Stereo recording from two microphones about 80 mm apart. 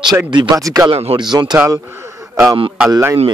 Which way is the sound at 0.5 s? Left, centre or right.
Right.